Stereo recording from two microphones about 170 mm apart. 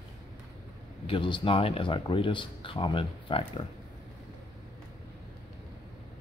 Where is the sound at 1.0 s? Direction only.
30° left (ahead or behind).